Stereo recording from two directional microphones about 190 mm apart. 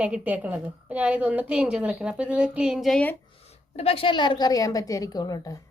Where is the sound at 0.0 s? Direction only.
5° right (ahead or behind).